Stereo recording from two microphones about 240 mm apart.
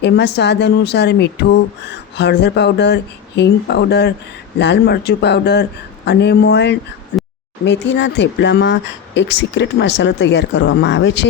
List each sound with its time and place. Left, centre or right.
0.0 s speech: left